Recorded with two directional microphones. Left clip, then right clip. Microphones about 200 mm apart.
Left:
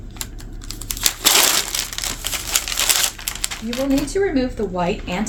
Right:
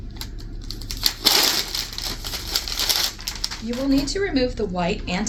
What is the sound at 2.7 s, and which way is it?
Crumpling, 5° left (ahead or behind).